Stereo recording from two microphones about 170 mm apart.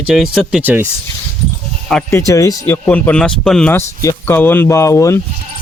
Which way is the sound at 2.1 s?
15° left (ahead or behind).